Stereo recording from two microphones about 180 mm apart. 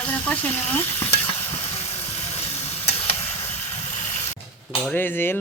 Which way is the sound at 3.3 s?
35° left (ahead or behind).